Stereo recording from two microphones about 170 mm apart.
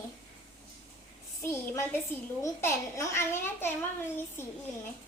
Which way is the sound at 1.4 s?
15° left (ahead or behind).